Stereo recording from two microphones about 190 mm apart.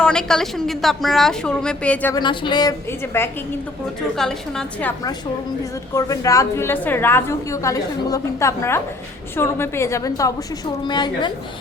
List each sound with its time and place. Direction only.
0.0 s a woman's voice: 5° left (ahead or behind)
2.1 s a woman's voice: 25° left (ahead or behind)
4.2 s a woman's voice: 5° left (ahead or behind)
5.9 s a woman's voice: 20° left (ahead or behind)